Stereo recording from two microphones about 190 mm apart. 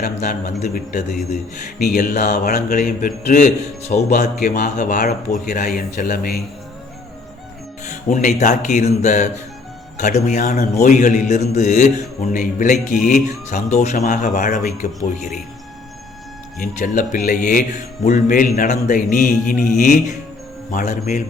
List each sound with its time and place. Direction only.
0.7 s a man's voice: 40° left (ahead or behind)
1.8 s mantra: 55° left (ahead or behind)
2.3 s speech: 55° left (ahead or behind)
3.2 s a man's voice: 40° left (ahead or behind)
7.9 s a man's voice: 40° left (ahead or behind)
16.6 s a man's voice: 45° left (ahead or behind)